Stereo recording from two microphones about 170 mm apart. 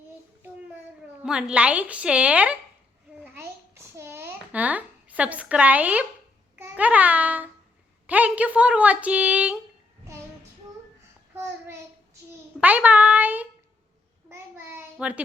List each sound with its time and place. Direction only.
1.2 s speech: 5° right (ahead or behind)
3.3 s a sound: 15° right (ahead or behind)
6.6 s babbling: 10° right (ahead or behind)
8.0 s speech: 10° right (ahead or behind)
11.3 s child singing: 15° right (ahead or behind)
12.5 s a child's voice: 10° right (ahead or behind)
14.3 s child singing: 15° right (ahead or behind)